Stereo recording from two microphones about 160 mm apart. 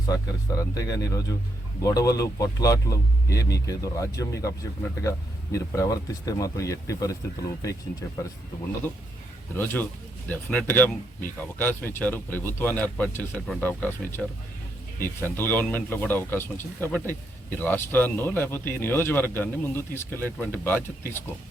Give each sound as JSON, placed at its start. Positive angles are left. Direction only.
{"t": 0.0, "sound": "speech", "side_deg": 20}
{"t": 10.2, "sound": "speech", "side_deg": 5}